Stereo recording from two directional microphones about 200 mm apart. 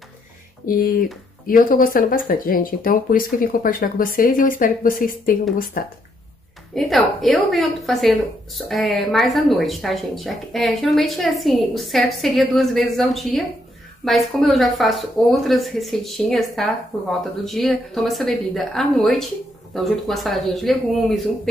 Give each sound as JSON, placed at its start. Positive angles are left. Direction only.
{"t": 0.7, "sound": "speech", "side_deg": 45}
{"t": 6.7, "sound": "a woman's voice", "side_deg": 0}